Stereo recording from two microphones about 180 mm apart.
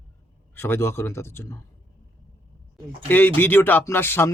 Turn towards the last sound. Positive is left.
turn(degrees=15)  # may be behind; listen again after turning